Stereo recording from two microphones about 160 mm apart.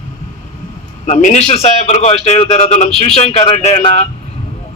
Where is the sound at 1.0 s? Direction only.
45° left (ahead or behind).